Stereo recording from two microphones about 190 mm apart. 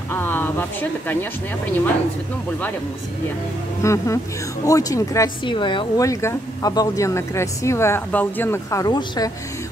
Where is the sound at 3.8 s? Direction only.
15° left (ahead or behind).